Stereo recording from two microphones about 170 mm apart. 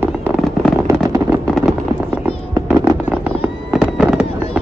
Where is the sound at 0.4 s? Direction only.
Centre (ahead or behind).